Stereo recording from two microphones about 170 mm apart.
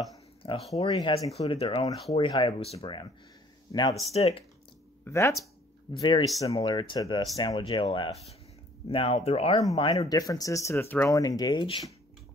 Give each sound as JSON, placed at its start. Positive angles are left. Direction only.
{"t": 0.4, "sound": "a sound", "side_deg": 35}
{"t": 0.8, "sound": "speech", "side_deg": 25}
{"t": 4.1, "sound": "speech", "side_deg": 35}
{"t": 5.0, "sound": "speech", "side_deg": 15}